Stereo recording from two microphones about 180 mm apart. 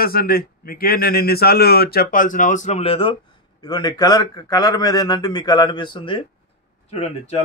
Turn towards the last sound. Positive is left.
turn(degrees=35)  # may be behind; listen again after turning